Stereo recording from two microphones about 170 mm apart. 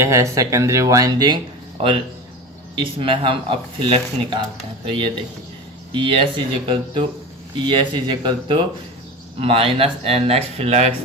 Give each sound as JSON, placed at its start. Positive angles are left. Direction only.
{"t": 0.0, "sound": "speech", "side_deg": -20}
{"t": 2.7, "sound": "speech", "side_deg": -30}